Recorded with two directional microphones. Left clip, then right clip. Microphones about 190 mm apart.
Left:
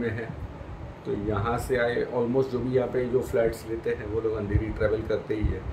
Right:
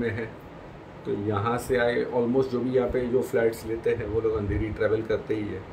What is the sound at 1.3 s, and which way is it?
Speech, 10° right (ahead or behind).